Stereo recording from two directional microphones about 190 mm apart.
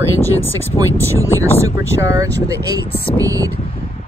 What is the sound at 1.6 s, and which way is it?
Speech, 15° right (ahead or behind).